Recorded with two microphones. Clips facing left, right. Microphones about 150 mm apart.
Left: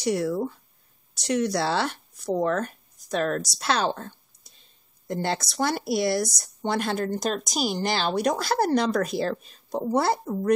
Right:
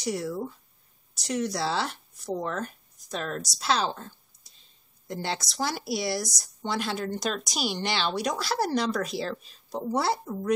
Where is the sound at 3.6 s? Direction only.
Centre (ahead or behind).